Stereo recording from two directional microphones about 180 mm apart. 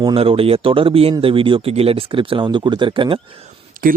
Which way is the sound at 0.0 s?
30° right (ahead or behind).